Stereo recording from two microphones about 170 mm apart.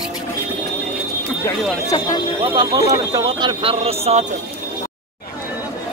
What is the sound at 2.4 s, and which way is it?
Speech, 25° right (ahead or behind).